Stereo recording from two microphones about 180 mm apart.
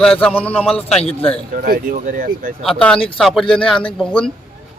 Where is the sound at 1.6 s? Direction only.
55° right (ahead or behind).